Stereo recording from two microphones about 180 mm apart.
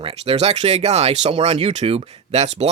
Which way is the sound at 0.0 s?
35° right (ahead or behind).